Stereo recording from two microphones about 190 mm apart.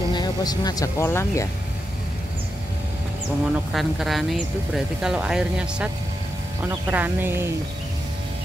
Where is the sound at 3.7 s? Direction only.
Centre (ahead or behind).